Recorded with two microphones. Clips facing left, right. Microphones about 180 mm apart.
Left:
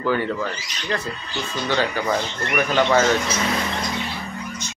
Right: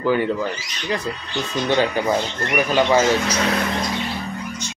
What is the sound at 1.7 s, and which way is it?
Speech, 20° right (ahead or behind).